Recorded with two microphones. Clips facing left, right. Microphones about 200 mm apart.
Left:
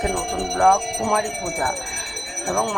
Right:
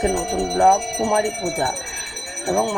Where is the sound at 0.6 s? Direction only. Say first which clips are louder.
Right 1 dB; 20° right (ahead or behind).